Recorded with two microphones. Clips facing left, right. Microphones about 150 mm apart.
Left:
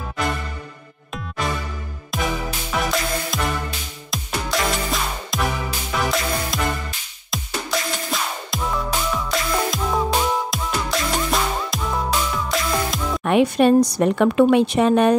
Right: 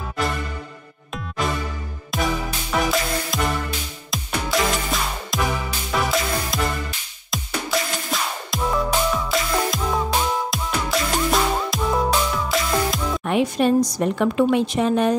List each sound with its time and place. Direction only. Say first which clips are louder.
2.1 s music: right 1 dB; centre (ahead or behind)
13.2 s a woman's voice: left 5 dB; 65° left (ahead or behind)